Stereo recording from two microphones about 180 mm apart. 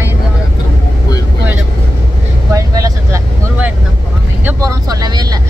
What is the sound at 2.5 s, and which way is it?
Vehicle, 20° right (ahead or behind).